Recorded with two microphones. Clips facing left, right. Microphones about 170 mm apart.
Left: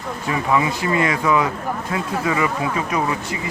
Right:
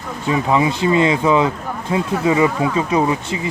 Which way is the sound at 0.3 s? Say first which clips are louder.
Right 3 dB; 25° right (ahead or behind).